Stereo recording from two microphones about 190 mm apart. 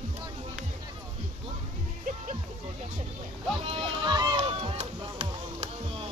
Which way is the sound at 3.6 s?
30° right (ahead or behind).